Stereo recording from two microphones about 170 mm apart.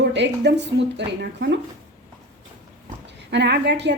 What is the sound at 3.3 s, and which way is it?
Speech, 85° right.